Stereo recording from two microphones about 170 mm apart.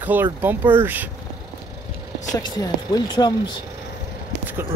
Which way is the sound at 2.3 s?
25° left (ahead or behind).